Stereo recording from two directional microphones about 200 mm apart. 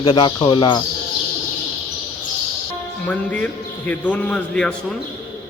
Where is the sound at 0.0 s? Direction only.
20° left (ahead or behind).